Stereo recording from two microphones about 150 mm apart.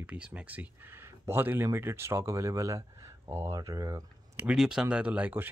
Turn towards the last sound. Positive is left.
turn(degrees=-10)  # may be behind; listen again after turning